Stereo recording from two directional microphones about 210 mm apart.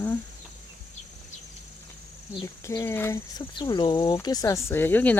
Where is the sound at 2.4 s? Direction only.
15° left (ahead or behind).